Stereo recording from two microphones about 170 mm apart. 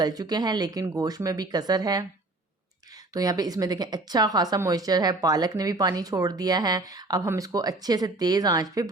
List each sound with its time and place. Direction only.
0.0 s speech: 25° right (ahead or behind)
3.1 s speech: 20° right (ahead or behind)